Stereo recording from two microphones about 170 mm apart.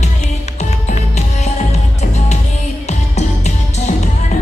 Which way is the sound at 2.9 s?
45° left (ahead or behind).